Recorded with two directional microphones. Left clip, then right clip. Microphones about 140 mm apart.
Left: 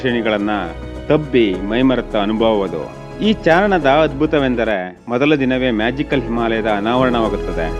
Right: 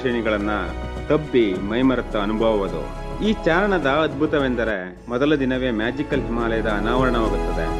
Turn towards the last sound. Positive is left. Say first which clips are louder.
# left 5 dB
turn(degrees=50)  # may be behind; listen again after turning